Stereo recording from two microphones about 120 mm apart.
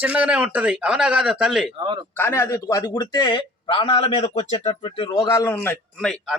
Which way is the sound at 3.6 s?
50° left (ahead or behind).